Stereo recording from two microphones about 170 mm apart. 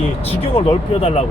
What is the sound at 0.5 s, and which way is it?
Speech, 35° left (ahead or behind).